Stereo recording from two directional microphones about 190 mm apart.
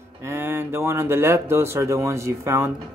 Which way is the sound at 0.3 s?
10° right (ahead or behind).